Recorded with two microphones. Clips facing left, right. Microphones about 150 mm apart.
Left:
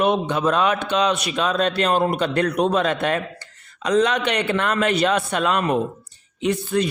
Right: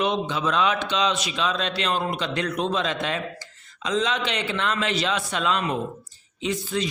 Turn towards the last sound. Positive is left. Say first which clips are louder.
# left 6 dB
turn(degrees=60)  # may be behind; listen again after turning